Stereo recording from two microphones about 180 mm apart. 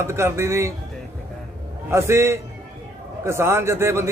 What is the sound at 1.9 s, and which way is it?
Speech, 15° right (ahead or behind).